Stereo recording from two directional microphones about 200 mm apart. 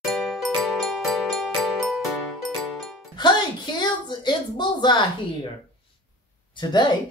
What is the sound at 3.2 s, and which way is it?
Speech, 20° left (ahead or behind).